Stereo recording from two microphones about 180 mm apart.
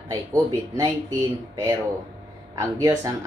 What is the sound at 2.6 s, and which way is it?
Speech, 15° right (ahead or behind).